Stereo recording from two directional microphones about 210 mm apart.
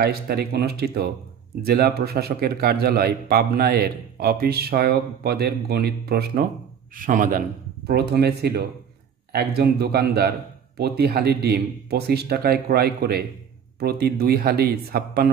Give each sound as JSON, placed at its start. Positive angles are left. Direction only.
{"t": 0.0, "sound": "speech", "side_deg": -45}